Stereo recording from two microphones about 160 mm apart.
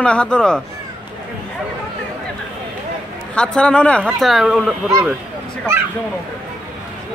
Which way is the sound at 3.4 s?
5° left (ahead or behind).